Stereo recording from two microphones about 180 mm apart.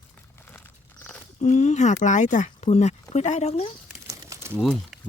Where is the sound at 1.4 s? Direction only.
40° left (ahead or behind).